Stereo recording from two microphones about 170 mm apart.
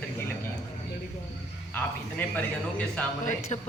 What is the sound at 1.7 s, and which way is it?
A man's voice, 10° left (ahead or behind).